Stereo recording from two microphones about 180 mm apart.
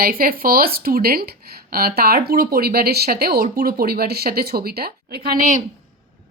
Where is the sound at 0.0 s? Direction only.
55° right (ahead or behind).